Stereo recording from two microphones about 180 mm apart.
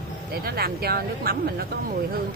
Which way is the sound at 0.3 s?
55° right (ahead or behind).